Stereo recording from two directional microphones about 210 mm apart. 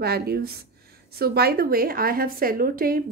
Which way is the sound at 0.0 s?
50° right (ahead or behind).